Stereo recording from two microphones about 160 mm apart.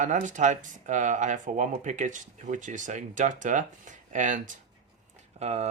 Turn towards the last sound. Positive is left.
turn(degrees=-45)  # may be behind; listen again after turning